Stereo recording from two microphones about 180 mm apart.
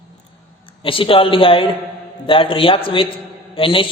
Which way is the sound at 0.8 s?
30° left (ahead or behind).